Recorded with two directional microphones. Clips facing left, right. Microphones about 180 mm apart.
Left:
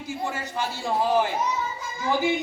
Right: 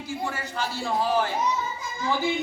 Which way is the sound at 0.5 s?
20° left (ahead or behind).